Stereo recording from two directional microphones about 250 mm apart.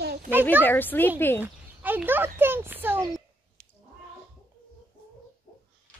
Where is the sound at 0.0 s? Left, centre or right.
Right.